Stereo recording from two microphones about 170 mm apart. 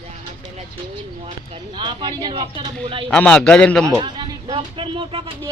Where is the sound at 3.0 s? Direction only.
5° left (ahead or behind).